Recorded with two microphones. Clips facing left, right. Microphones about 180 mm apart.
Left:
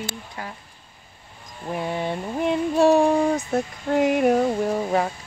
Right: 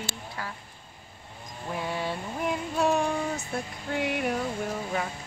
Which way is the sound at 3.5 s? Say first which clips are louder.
Left 9 dB; 45° left (ahead or behind).